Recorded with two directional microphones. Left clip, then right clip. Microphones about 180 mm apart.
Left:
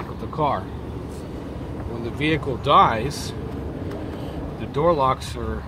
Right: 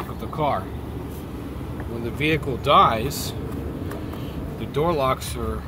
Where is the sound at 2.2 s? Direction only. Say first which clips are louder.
Even; 30° left (ahead or behind).